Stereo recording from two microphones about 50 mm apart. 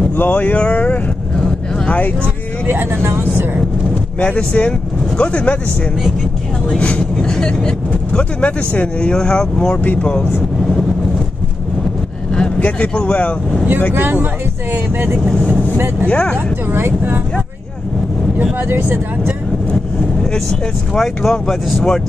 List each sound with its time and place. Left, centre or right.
0.1 s vehicle: left
1.9 s speech: left
2.6 s speech: right
4.2 s speech: left
6.8 s speech: left
12.3 s vehicle: centre
12.6 s speech: left
13.9 s speech: right
16.1 s speech: left
16.7 s speech: right
18.6 s speech: right
20.3 s speech: centre